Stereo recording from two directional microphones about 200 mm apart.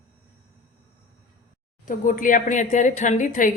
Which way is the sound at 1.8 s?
40° left (ahead or behind).